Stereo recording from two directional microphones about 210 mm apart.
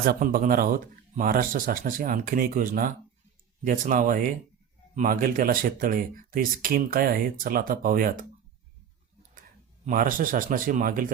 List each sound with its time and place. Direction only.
0.0 s speech: 45° right (ahead or behind)
9.8 s speech: 40° right (ahead or behind)